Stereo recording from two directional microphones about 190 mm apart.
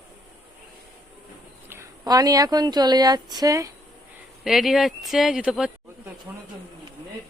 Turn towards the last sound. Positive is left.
turn(degrees=-5)  # may be behind; listen again after turning